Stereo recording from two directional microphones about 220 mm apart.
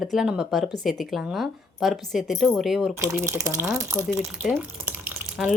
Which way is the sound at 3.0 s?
15° right (ahead or behind).